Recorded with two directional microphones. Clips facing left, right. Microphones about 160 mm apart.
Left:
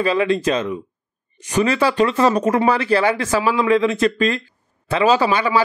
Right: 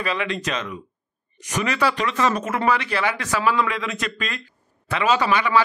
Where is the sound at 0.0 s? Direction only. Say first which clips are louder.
Left 8 dB; 30° left (ahead or behind).